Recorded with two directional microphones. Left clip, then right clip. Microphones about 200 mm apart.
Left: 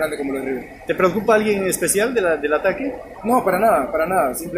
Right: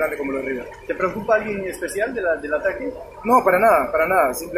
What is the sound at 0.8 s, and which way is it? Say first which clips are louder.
Speech: left 4 dB; 60° left (ahead or behind).